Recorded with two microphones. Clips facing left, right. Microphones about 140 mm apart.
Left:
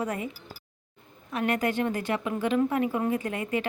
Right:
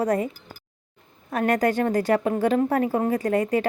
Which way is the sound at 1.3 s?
45° right (ahead or behind).